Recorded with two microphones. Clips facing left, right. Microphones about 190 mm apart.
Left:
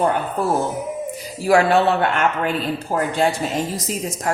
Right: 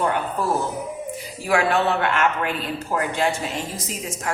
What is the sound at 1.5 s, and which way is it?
Speech, 35° left (ahead or behind).